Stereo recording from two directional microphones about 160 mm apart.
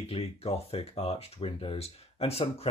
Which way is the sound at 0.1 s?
40° left (ahead or behind).